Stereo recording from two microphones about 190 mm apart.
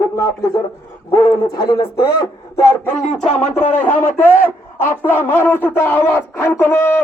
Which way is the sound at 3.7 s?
10° left (ahead or behind).